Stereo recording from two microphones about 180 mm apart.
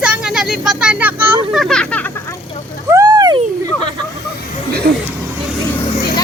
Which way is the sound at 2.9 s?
20° right (ahead or behind).